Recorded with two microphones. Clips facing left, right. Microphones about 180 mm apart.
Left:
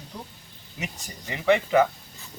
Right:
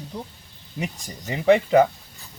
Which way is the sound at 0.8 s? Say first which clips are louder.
Right 5 dB; 35° right (ahead or behind).